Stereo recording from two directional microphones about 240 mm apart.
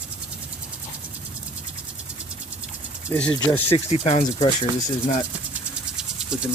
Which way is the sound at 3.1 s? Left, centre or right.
Centre.